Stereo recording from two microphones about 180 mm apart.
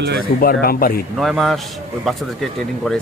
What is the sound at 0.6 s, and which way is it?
Speech, 55° left (ahead or behind).